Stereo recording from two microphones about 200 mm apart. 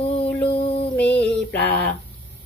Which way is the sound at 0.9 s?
5° left (ahead or behind).